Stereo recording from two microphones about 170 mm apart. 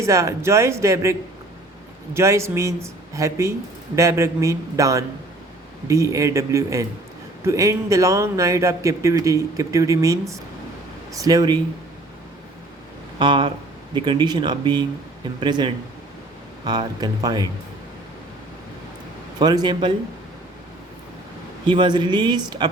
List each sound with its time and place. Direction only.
0.0 s speech: 15° right (ahead or behind)
2.1 s a man's voice: 15° right (ahead or behind)
13.1 s a man's voice: 30° right (ahead or behind)
19.4 s a man's voice: 25° right (ahead or behind)
21.7 s a man's voice: 25° right (ahead or behind)